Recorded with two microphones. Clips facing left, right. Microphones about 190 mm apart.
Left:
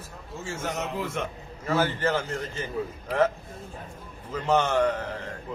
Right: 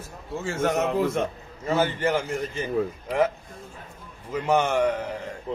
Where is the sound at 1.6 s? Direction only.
20° right (ahead or behind).